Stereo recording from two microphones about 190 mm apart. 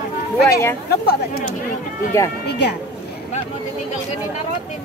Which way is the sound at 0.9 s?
55° left (ahead or behind).